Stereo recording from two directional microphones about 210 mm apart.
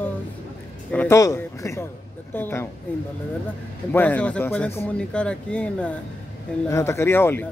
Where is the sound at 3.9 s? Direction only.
5° left (ahead or behind).